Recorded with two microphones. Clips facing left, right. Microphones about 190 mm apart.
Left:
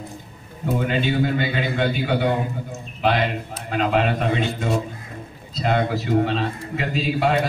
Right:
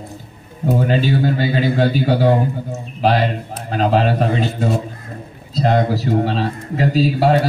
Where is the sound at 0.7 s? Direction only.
35° right (ahead or behind).